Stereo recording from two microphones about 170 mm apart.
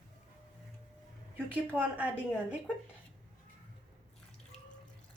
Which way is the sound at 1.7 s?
10° right (ahead or behind).